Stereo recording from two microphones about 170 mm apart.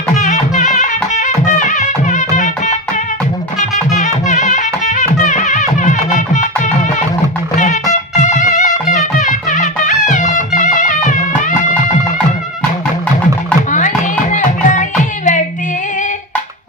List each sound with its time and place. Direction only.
0.1 s music: 45° left (ahead or behind)
4.0 s music: 45° left (ahead or behind)
13.7 s music: 50° left (ahead or behind)